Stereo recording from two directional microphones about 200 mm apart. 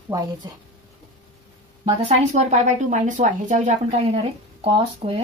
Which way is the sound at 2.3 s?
35° right (ahead or behind).